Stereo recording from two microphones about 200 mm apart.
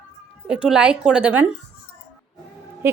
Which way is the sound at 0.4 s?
5° right (ahead or behind).